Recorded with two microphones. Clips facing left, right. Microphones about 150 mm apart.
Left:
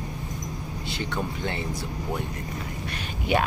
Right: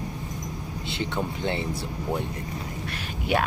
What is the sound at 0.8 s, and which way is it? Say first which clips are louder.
Speech: right 1 dB; 25° right (ahead or behind).